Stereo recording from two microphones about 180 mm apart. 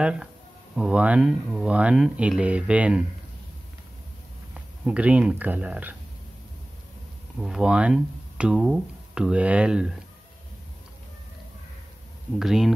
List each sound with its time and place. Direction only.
0.0 s speech: 5° right (ahead or behind)
4.8 s speech: 5° right (ahead or behind)
7.3 s speech: 5° right (ahead or behind)
12.4 s speech: centre (ahead or behind)